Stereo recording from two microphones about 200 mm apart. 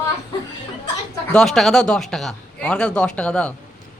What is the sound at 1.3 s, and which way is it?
A man's voice, centre (ahead or behind).